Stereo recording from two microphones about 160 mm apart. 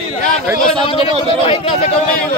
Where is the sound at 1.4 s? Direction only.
35° left (ahead or behind).